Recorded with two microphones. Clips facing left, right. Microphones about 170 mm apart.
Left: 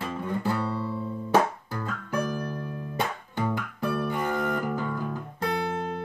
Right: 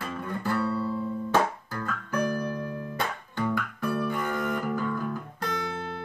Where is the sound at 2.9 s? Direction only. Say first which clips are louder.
Left 5 dB; 20° left (ahead or behind).